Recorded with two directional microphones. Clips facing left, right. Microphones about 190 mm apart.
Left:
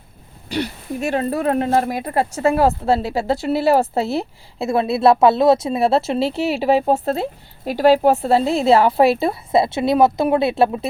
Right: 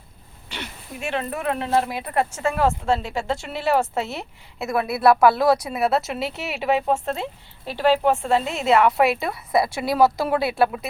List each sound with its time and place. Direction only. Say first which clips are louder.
0.5 s speech: left 12 dB; 40° left (ahead or behind)